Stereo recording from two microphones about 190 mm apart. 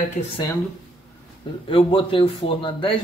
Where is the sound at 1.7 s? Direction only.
25° left (ahead or behind).